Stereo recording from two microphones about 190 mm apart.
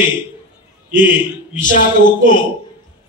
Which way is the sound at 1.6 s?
45° left (ahead or behind).